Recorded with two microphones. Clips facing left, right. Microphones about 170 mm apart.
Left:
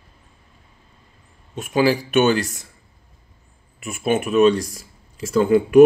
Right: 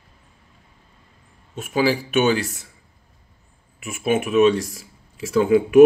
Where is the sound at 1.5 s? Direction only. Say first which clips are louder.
Left 2 dB; 5° right (ahead or behind).